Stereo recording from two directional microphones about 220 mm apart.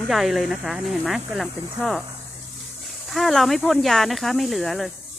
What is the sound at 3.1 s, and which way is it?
Speech, centre (ahead or behind).